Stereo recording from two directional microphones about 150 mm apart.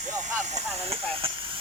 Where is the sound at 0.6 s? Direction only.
40° right (ahead or behind).